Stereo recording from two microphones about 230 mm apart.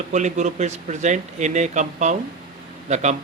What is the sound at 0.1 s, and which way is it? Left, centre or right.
Speech, right.